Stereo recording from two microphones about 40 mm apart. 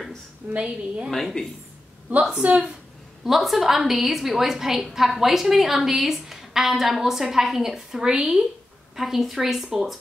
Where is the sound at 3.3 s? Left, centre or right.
Centre.